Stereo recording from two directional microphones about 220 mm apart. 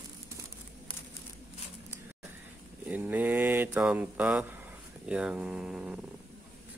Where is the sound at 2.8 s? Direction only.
5° right (ahead or behind).